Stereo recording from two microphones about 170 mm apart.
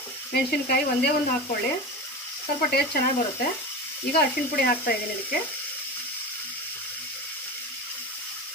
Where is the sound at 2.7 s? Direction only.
65° left (ahead or behind).